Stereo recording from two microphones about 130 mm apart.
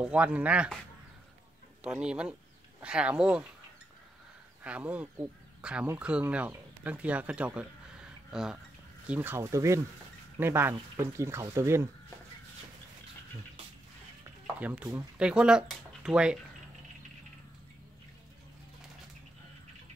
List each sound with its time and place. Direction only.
0.0 s speech: 10° right (ahead or behind)
1.8 s speech: 5° right (ahead or behind)
4.6 s speech: 10° right (ahead or behind)
14.4 s speech: 10° right (ahead or behind)